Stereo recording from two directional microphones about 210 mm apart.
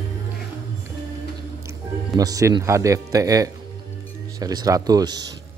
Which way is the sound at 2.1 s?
15° right (ahead or behind).